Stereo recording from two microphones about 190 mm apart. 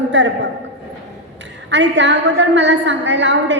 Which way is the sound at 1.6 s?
70° right (ahead or behind).